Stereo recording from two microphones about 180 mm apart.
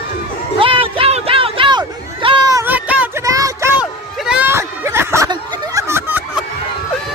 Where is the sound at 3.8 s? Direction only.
5° right (ahead or behind).